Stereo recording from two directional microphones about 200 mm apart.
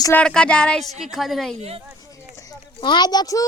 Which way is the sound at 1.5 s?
30° right (ahead or behind).